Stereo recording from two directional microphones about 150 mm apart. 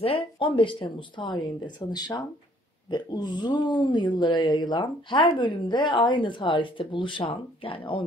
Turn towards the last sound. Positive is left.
turn(degrees=35)  # may be behind; listen again after turning